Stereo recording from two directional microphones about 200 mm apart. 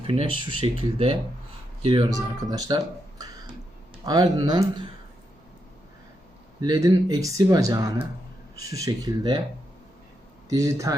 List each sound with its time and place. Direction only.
0.1 s speech: 25° right (ahead or behind)
6.6 s speech: 20° right (ahead or behind)
10.5 s speech: 15° right (ahead or behind)